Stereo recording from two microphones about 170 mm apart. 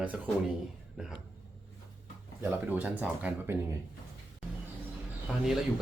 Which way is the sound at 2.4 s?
10° right (ahead or behind).